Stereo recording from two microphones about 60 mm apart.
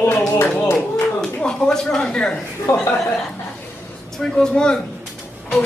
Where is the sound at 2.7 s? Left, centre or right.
Left.